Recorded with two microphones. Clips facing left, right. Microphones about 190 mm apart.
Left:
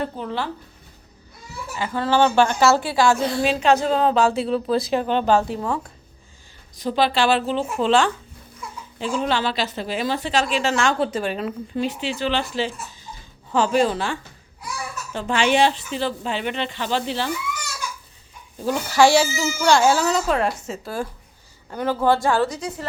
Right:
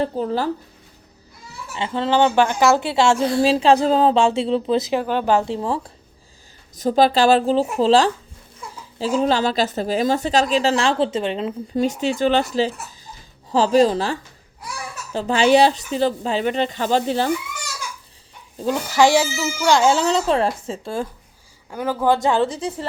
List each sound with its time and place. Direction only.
0.0 s speech: 35° right (ahead or behind)
1.7 s a woman's voice: 25° right (ahead or behind)
5.5 s a woman's voice: 30° right (ahead or behind)
6.7 s speech: 45° right (ahead or behind); by 11.5 s 25° right (ahead or behind)
11.7 s speech: 45° right (ahead or behind)
18.6 s a woman's voice: 15° right (ahead or behind)
21.7 s a woman's voice: 10° right (ahead or behind); by 22.9 s 30° right (ahead or behind)